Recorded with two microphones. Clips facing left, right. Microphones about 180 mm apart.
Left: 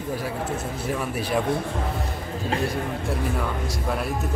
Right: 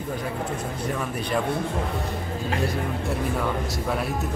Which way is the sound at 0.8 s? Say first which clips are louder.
Left 2 dB; 5° left (ahead or behind).